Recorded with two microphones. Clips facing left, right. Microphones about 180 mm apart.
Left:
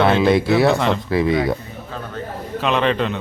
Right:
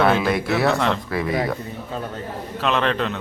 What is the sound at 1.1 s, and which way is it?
Speech, 25° left (ahead or behind).